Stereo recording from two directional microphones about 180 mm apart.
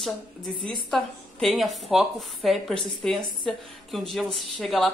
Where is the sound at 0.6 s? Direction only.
25° right (ahead or behind).